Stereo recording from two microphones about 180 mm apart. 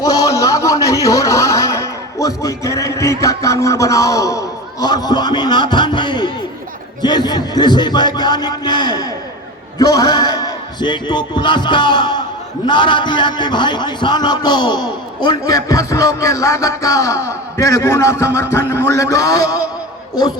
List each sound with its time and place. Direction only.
0.0 s a man's voice: 20° left (ahead or behind)